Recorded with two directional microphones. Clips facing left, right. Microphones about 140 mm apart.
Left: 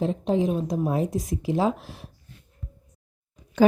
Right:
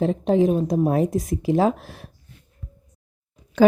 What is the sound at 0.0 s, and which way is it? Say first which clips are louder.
A woman's voice: right 5 dB; 65° right (ahead or behind).